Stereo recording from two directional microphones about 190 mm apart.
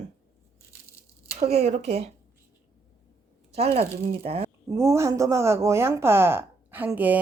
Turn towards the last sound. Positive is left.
turn(degrees=-10)  # may be behind; listen again after turning